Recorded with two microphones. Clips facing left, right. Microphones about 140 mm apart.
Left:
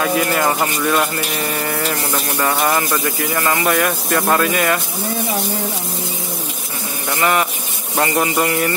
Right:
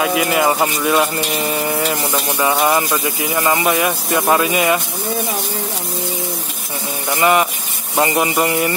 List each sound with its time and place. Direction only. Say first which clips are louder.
0.0 s speech: right 1 dB; 10° right (ahead or behind)
7.1 s speech: right 3 dB; 15° right (ahead or behind)